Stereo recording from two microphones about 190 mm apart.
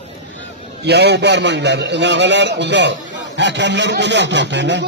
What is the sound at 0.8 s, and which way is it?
A man's voice, 60° right (ahead or behind).